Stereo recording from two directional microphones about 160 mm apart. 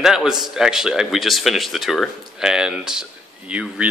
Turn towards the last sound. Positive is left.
turn(degrees=-5)  # may be behind; listen again after turning